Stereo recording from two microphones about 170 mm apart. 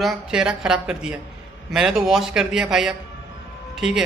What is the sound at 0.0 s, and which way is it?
A man's voice, 5° right (ahead or behind).